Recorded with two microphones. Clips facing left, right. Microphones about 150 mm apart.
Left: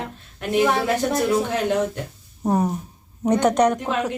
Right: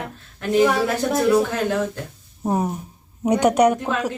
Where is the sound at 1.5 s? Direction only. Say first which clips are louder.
Left 1 dB; 20° left (ahead or behind).